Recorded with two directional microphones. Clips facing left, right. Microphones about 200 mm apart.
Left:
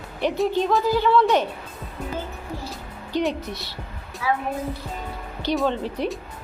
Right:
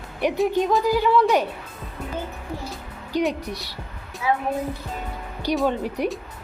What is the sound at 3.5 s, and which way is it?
Speech, 10° right (ahead or behind).